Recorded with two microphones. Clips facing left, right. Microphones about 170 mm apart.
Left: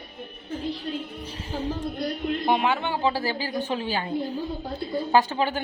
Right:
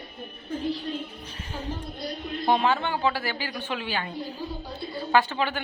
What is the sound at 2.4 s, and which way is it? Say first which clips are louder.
Speech: right 2 dB; 15° left (ahead or behind).